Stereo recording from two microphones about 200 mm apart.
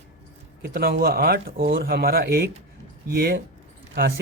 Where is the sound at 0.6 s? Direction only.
50° right (ahead or behind).